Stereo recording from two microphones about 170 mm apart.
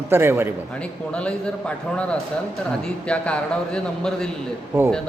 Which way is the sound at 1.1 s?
5° left (ahead or behind).